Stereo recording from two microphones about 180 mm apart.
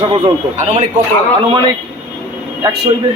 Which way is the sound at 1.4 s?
30° right (ahead or behind).